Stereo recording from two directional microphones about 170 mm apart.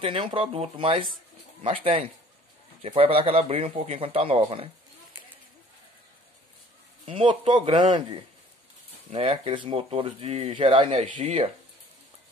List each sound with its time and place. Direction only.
0.0 s speech: 30° right (ahead or behind)
7.1 s speech: 30° right (ahead or behind)
9.1 s speech: 35° right (ahead or behind)